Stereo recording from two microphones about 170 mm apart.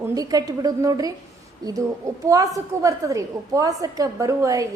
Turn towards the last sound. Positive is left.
turn(degrees=-20)  # may be behind; listen again after turning